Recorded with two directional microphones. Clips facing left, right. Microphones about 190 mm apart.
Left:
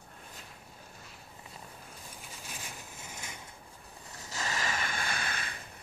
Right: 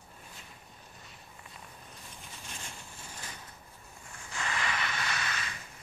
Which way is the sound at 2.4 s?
5° left (ahead or behind).